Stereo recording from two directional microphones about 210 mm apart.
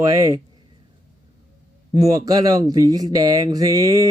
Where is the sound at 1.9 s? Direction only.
15° right (ahead or behind).